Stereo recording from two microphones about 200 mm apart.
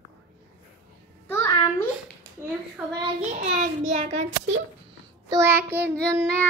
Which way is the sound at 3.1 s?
35° right (ahead or behind).